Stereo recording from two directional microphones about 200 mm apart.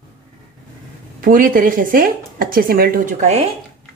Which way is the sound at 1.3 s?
40° right (ahead or behind).